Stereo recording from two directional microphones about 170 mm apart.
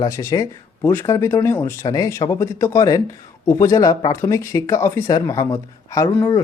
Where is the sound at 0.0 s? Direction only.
20° left (ahead or behind).